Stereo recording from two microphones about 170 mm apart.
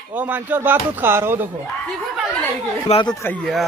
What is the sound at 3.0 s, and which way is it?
Speech, centre (ahead or behind).